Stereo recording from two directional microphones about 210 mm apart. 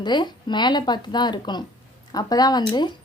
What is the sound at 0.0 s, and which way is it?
Speech, 20° left (ahead or behind).